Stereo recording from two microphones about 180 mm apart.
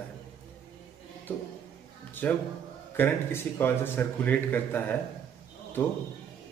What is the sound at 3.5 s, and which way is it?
A man's voice, 10° left (ahead or behind).